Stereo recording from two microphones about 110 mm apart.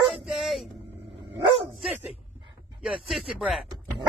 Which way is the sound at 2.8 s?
5° right (ahead or behind).